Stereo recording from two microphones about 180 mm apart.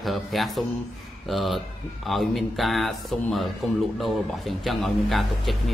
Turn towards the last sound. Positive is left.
turn(degrees=0)  # may be behind; listen again after turning